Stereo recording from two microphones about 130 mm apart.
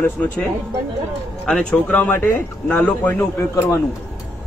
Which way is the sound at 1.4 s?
5° left (ahead or behind).